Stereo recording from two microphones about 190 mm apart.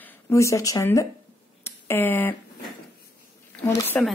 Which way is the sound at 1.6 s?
10° left (ahead or behind).